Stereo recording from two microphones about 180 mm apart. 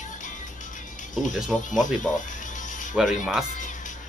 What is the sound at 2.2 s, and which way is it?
Music, 45° left (ahead or behind).